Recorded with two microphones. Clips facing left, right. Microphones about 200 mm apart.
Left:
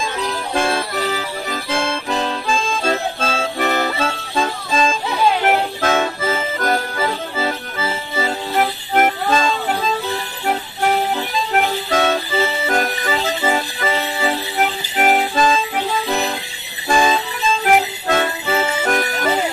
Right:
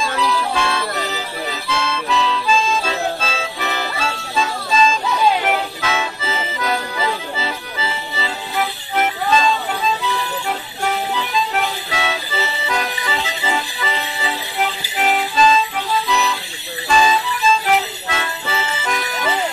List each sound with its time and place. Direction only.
0.0 s music: 50° left (ahead or behind)
11.1 s music: 50° left (ahead or behind)